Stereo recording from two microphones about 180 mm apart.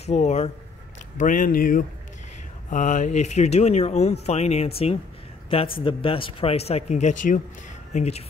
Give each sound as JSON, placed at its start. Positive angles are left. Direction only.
{"t": 0.0, "sound": "speech", "side_deg": 40}